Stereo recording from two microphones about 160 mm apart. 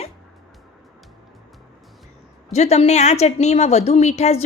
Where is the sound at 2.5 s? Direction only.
45° left (ahead or behind).